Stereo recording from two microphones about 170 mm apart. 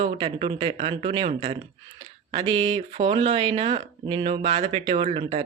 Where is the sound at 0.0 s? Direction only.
30° right (ahead or behind).